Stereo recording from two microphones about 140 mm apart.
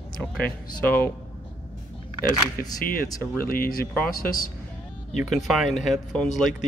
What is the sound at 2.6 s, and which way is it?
A man's voice, 90° left.